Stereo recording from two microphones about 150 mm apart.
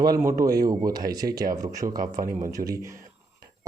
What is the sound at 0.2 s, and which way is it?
Speech, 20° right (ahead or behind).